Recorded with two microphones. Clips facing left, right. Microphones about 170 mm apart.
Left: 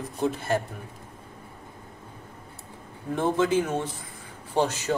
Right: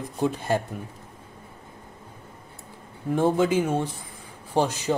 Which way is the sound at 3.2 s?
10° right (ahead or behind).